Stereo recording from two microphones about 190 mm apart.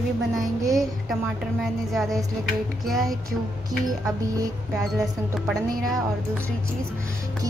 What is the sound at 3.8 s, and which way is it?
Speech, 20° right (ahead or behind).